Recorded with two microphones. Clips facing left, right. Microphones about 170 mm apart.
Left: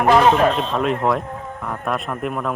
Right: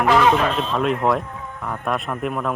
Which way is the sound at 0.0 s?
40° left (ahead or behind).